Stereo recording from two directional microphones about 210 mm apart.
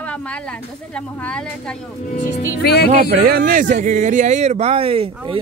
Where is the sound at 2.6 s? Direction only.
50° left (ahead or behind).